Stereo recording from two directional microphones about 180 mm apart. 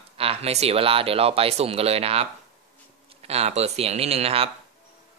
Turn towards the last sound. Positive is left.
turn(degrees=-35)  # may be behind; listen again after turning